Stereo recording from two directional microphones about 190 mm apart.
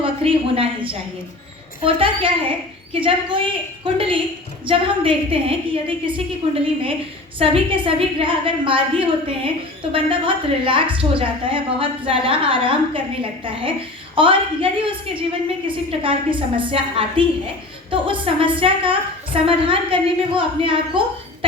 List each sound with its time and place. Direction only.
0.0 s a woman's voice: 30° right (ahead or behind)